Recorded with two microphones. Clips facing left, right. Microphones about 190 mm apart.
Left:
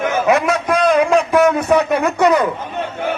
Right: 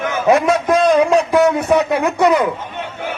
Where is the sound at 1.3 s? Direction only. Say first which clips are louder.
Even; 15° right (ahead or behind).